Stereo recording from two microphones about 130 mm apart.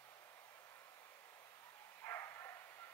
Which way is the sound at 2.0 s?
20° left (ahead or behind).